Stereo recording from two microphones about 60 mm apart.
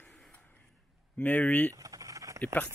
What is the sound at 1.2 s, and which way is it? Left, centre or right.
Speech, left.